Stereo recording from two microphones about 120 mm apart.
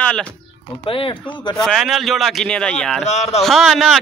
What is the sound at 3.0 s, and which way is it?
Speech, 65° left (ahead or behind).